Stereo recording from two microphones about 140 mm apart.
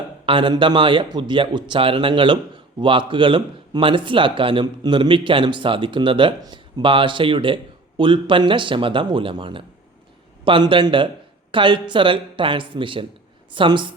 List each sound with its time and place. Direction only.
0.3 s speech: 35° right (ahead or behind)